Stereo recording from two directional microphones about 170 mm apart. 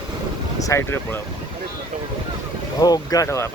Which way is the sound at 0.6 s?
15° left (ahead or behind).